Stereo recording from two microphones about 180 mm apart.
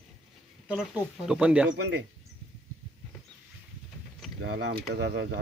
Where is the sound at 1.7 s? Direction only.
70° right (ahead or behind).